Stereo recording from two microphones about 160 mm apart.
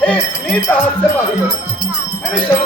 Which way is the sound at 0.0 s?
10° left (ahead or behind).